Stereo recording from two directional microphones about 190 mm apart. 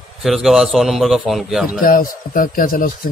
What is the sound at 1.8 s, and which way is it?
A man's voice, 45° left (ahead or behind).